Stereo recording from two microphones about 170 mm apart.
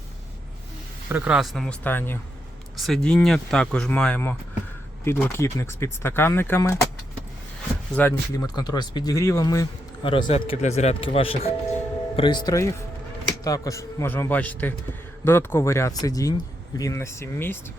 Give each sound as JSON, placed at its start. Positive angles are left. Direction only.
{"t": 1.1, "sound": "speech", "side_deg": -5}
{"t": 2.7, "sound": "speech", "side_deg": 0}
{"t": 7.9, "sound": "speech", "side_deg": 15}